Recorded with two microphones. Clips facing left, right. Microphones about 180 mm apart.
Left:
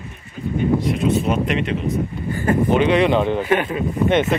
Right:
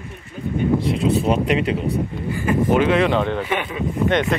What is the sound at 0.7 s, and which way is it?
Speech, 30° right (ahead or behind).